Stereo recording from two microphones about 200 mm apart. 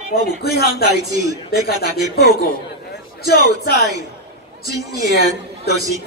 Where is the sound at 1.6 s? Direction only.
50° left (ahead or behind).